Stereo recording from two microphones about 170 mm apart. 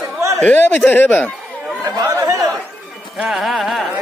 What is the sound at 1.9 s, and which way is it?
Chatter, 20° right (ahead or behind).